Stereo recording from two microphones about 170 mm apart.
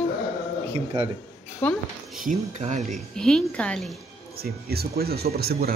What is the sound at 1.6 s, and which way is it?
Speech, 10° left (ahead or behind).